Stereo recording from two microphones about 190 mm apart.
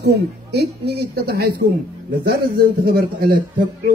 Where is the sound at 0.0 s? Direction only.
60° right (ahead or behind).